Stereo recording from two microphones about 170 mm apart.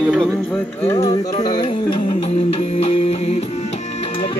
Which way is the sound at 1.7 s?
35° left (ahead or behind).